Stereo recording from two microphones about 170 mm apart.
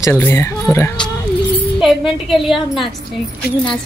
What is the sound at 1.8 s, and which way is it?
A woman's voice, centre (ahead or behind).